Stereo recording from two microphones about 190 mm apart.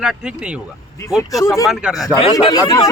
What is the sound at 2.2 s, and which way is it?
Speech, 25° left (ahead or behind).